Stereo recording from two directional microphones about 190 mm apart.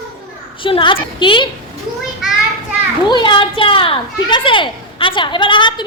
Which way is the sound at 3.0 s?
25° left (ahead or behind).